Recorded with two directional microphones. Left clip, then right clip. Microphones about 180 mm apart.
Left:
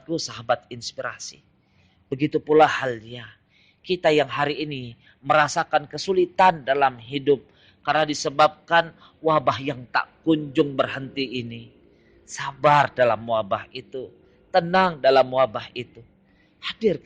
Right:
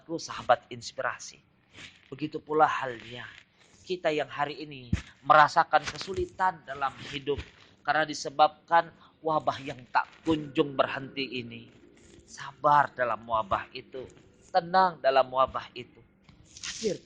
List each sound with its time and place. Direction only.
0.1 s a man's voice: 40° left (ahead or behind)
7.9 s a man's voice: 40° left (ahead or behind)
16.6 s a sound: 40° left (ahead or behind)